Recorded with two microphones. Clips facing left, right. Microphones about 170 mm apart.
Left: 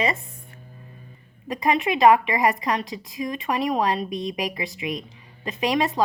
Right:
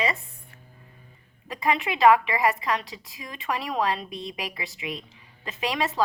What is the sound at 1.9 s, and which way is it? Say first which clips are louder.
Speech: left 2 dB; 15° left (ahead or behind).